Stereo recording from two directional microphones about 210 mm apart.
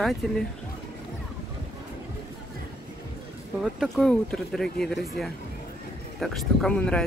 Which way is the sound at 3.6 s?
Centre (ahead or behind).